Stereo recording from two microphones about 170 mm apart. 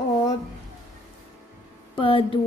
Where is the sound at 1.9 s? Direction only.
30° left (ahead or behind).